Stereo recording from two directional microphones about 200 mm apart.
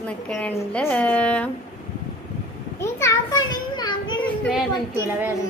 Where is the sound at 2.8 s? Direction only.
15° left (ahead or behind).